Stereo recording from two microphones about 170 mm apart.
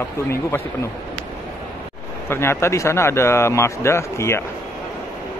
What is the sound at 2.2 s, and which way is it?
A man's voice, 15° left (ahead or behind).